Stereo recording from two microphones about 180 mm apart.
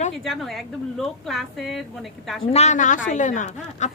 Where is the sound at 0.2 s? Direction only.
Centre (ahead or behind).